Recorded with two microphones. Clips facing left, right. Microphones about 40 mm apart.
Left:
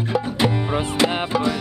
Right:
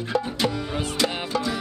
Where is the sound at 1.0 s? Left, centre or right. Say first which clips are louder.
Left 5 dB; left.